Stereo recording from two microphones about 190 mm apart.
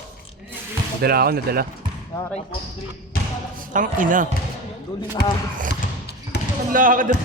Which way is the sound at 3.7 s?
45° right (ahead or behind).